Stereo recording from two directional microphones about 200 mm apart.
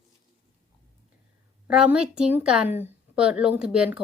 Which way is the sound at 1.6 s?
5° right (ahead or behind).